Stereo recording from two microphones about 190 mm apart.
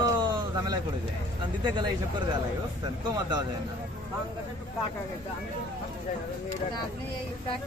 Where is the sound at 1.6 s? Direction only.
25° right (ahead or behind).